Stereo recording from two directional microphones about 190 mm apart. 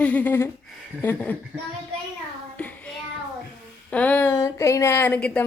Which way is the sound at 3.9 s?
10° left (ahead or behind).